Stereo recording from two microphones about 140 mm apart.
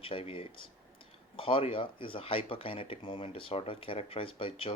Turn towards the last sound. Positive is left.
turn(degrees=40)  # may be behind; listen again after turning